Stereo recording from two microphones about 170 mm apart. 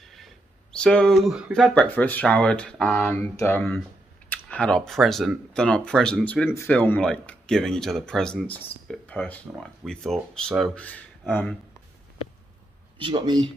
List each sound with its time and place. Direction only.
0.0 s a sound: centre (ahead or behind)
0.7 s speech: 5° left (ahead or behind)
13.0 s speech: 25° right (ahead or behind)